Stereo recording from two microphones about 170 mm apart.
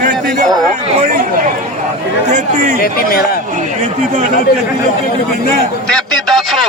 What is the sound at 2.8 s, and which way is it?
Speech, 60° left (ahead or behind).